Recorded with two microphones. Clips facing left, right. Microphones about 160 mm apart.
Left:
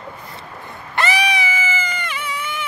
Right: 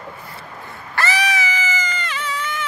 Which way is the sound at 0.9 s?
15° left (ahead or behind).